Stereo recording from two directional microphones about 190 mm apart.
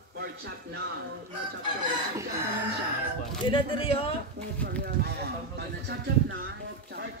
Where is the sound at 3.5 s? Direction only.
30° left (ahead or behind).